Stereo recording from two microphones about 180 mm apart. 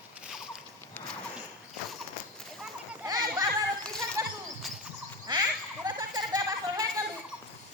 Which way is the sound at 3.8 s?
5° left (ahead or behind).